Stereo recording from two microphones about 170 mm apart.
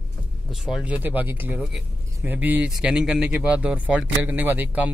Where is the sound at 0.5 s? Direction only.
Centre (ahead or behind).